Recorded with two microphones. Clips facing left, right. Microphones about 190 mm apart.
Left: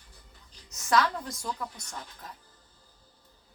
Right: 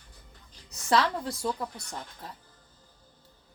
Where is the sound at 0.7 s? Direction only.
30° right (ahead or behind).